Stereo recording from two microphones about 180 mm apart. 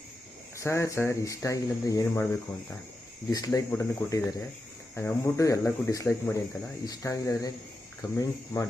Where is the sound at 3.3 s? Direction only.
20° left (ahead or behind).